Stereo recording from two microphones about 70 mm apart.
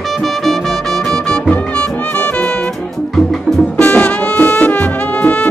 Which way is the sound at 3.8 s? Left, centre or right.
Centre.